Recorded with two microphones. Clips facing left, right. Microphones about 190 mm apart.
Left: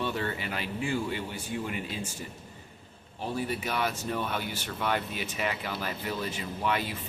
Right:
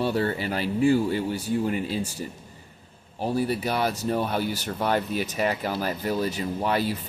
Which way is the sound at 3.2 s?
40° right (ahead or behind).